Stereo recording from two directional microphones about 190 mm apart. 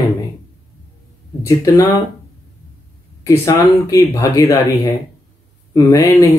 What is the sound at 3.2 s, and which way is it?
Speech, 15° left (ahead or behind).